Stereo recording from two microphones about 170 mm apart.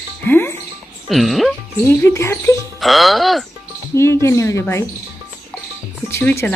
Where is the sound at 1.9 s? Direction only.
15° left (ahead or behind).